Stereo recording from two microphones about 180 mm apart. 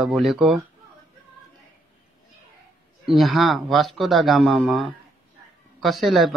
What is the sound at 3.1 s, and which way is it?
A man's voice, centre (ahead or behind).